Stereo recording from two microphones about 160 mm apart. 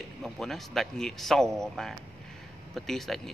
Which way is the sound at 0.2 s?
Centre (ahead or behind).